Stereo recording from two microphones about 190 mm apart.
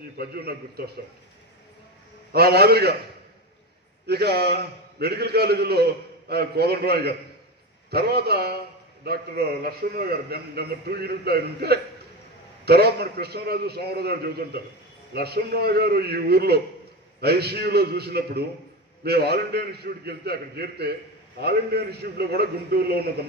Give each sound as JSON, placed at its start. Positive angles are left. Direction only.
{"t": 0.2, "sound": "a man's voice", "side_deg": -55}
{"t": 2.3, "sound": "a man's voice", "side_deg": -55}
{"t": 4.0, "sound": "a man's voice", "side_deg": -55}